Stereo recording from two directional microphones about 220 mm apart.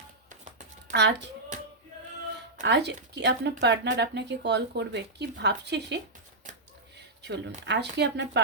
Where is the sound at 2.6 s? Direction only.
50° right (ahead or behind).